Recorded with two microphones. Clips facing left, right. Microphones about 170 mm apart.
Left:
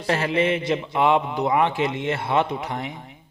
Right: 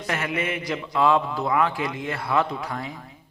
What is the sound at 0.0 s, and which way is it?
A man's voice, 30° left (ahead or behind).